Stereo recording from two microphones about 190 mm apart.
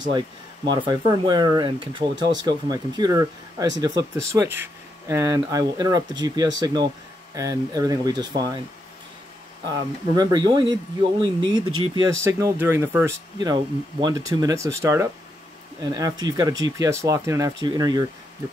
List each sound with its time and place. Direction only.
0.7 s speech: 25° right (ahead or behind)
9.7 s speech: 20° right (ahead or behind)